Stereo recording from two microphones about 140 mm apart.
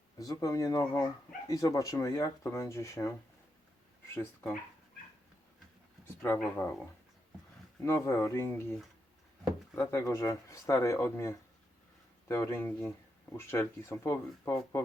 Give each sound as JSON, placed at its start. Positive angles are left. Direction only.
{"t": 0.2, "sound": "speech", "side_deg": 25}
{"t": 4.1, "sound": "speech", "side_deg": 15}
{"t": 6.2, "sound": "speech", "side_deg": 15}
{"t": 7.8, "sound": "speech", "side_deg": 20}
{"t": 9.7, "sound": "speech", "side_deg": 20}